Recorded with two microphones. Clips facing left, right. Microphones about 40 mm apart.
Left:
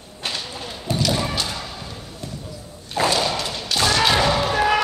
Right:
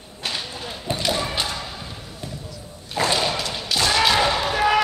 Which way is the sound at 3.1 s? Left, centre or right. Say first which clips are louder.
Even; centre.